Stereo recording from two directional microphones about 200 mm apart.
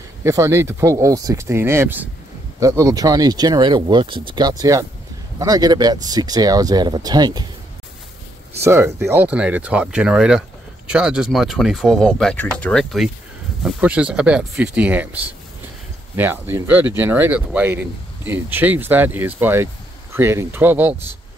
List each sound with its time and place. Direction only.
0.2 s speech: 15° right (ahead or behind)
8.5 s speech: 15° right (ahead or behind)
16.2 s speech: 10° right (ahead or behind)